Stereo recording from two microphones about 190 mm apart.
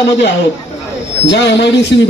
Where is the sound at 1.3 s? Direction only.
65° left (ahead or behind).